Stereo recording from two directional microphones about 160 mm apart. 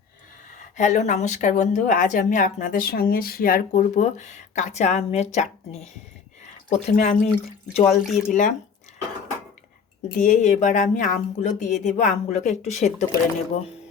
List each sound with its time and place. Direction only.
0.8 s speech: 50° left (ahead or behind)
6.4 s a sound: 45° left (ahead or behind)
6.9 s speech: 50° left (ahead or behind)
8.3 s speech: 55° left (ahead or behind)
10.2 s speech: 50° left (ahead or behind)